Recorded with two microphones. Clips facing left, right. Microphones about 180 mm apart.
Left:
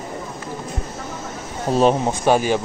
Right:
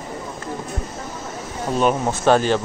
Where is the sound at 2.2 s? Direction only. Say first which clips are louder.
Right 1 dB; 10° left (ahead or behind).